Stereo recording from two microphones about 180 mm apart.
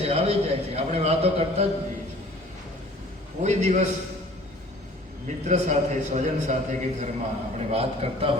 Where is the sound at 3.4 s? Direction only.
40° right (ahead or behind).